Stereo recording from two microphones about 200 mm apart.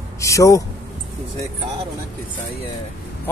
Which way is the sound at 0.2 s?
15° left (ahead or behind).